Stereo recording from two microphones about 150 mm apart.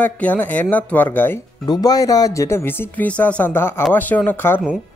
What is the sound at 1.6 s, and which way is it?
Speech, 25° left (ahead or behind).